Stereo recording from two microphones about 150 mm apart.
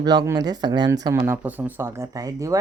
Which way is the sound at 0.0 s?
25° right (ahead or behind).